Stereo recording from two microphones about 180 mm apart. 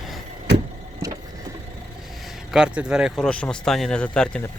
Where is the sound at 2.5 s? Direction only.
5° right (ahead or behind).